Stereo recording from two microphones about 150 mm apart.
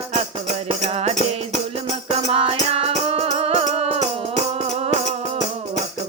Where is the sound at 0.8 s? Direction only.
45° right (ahead or behind).